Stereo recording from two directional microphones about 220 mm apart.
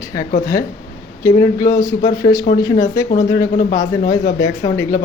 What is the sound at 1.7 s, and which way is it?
Speech, 15° left (ahead or behind).